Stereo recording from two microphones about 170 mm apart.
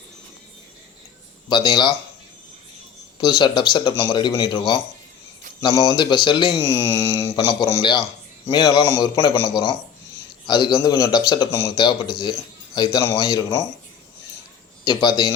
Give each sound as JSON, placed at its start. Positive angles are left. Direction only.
{"t": 1.5, "sound": "a man's voice", "side_deg": 25}
{"t": 3.2, "sound": "a man's voice", "side_deg": 25}
{"t": 7.3, "sound": "a man's voice", "side_deg": 25}
{"t": 14.8, "sound": "a man's voice", "side_deg": 25}